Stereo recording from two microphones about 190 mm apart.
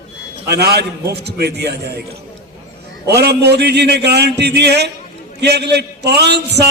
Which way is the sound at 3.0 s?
60° right (ahead or behind).